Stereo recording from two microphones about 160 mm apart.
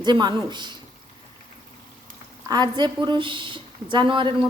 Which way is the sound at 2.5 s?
25° right (ahead or behind).